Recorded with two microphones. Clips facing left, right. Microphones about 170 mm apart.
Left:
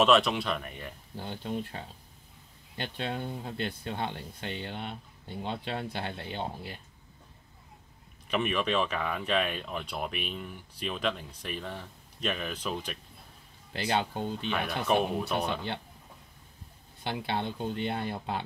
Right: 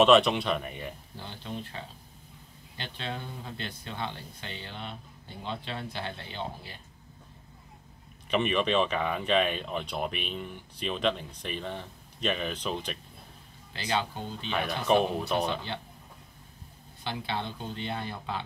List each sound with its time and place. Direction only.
0.0 s speech: centre (ahead or behind)
1.2 s speech: 50° left (ahead or behind)
2.8 s speech: 50° left (ahead or behind)
8.3 s speech: 5° left (ahead or behind)
13.7 s speech: 50° left (ahead or behind)
14.5 s speech: 5° left (ahead or behind)
17.0 s speech: 55° left (ahead or behind)